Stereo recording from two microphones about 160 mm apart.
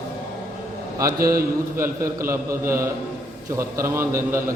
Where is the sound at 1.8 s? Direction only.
15° right (ahead or behind).